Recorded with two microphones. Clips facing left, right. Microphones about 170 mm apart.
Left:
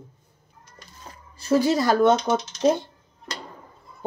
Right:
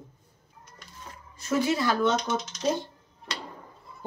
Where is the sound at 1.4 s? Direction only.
35° left (ahead or behind).